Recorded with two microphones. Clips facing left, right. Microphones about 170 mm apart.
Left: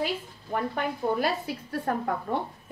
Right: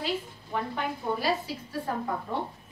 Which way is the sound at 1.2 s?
55° left (ahead or behind).